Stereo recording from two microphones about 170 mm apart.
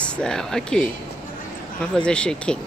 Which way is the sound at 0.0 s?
5° left (ahead or behind).